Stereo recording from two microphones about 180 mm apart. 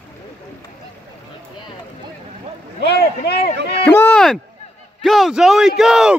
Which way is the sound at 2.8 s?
65° left (ahead or behind).